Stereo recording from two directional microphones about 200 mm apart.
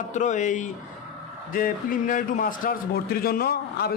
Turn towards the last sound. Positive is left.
turn(degrees=50)  # may be behind; listen again after turning